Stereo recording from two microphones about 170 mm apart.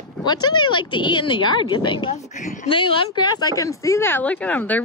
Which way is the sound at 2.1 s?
45° left (ahead or behind).